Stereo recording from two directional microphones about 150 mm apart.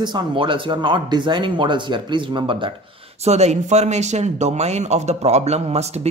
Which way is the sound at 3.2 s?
50° right (ahead or behind).